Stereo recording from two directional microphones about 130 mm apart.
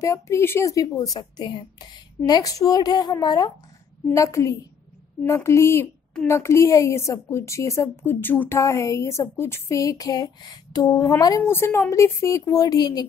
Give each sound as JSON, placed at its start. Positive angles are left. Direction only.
{"t": 0.0, "sound": "speech", "side_deg": 25}